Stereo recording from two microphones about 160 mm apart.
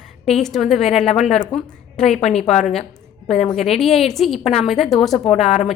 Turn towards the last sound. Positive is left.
turn(degrees=40)  # may be behind; listen again after turning